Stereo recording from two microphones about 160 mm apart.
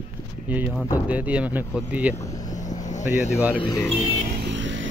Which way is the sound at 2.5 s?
50° left (ahead or behind).